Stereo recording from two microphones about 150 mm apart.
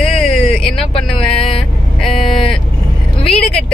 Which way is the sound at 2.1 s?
35° left (ahead or behind).